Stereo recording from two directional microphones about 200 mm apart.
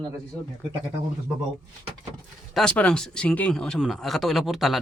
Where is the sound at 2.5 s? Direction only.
5° left (ahead or behind).